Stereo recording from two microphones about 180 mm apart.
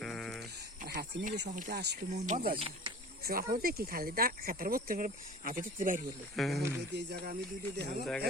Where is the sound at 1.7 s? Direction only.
65° right (ahead or behind).